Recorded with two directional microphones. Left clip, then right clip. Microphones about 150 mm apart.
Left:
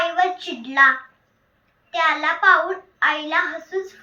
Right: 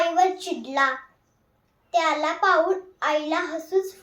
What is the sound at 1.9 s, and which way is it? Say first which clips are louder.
A child's voice: left 3 dB; 45° right (ahead or behind).